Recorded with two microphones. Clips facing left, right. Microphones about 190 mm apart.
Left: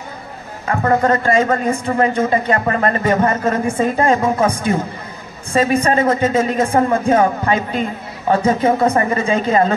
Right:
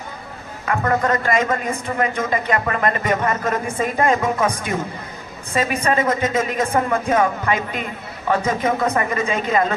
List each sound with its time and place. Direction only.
0.7 s a man's voice: 30° left (ahead or behind)